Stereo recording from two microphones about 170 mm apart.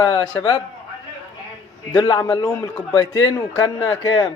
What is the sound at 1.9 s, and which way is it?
A man's voice, 25° left (ahead or behind).